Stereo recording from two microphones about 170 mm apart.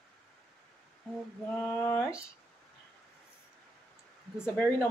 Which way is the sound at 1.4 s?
10° left (ahead or behind).